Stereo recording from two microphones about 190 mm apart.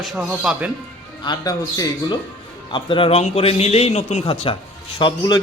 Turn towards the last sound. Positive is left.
turn(degrees=20)  # may be behind; listen again after turning